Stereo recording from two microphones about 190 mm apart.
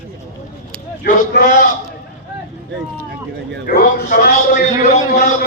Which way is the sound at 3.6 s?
50° left (ahead or behind).